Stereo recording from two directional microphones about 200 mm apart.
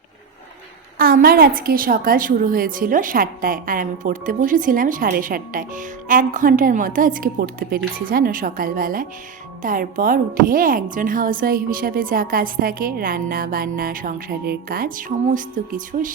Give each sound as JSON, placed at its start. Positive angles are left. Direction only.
{"t": 0.9, "sound": "a woman's voice", "side_deg": -45}